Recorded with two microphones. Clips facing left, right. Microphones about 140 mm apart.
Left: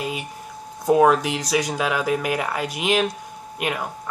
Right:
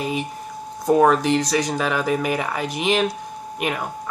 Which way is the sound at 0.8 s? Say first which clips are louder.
Right 1 dB; 5° left (ahead or behind).